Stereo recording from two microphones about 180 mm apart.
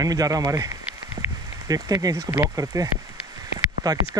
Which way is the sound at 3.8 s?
20° right (ahead or behind).